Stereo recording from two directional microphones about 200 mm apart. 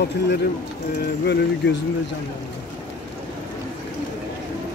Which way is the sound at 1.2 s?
55° left (ahead or behind).